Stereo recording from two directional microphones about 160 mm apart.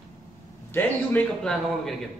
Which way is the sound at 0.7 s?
10° left (ahead or behind).